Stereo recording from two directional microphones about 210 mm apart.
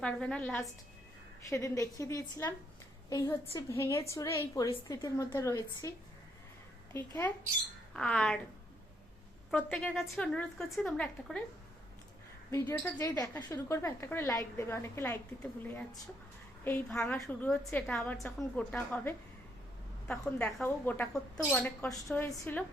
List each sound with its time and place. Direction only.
0.0 s a woman's voice: 5° left (ahead or behind)
6.9 s a woman's voice: 10° left (ahead or behind)
9.5 s a woman's voice: 5° left (ahead or behind)
12.5 s a woman's voice: 10° left (ahead or behind)